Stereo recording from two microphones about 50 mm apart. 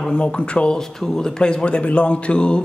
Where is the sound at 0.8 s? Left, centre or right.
Centre.